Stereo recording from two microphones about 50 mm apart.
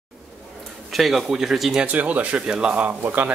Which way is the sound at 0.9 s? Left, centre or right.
Centre.